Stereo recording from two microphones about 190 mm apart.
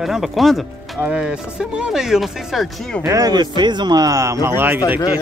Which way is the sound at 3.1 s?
20° right (ahead or behind).